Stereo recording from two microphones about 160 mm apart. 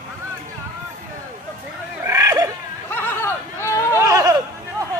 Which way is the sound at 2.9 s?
15° left (ahead or behind).